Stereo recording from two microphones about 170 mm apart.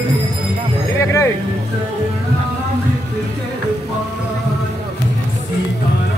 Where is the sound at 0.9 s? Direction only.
15° left (ahead or behind).